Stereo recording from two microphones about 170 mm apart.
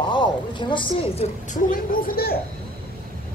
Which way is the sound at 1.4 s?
55° left (ahead or behind).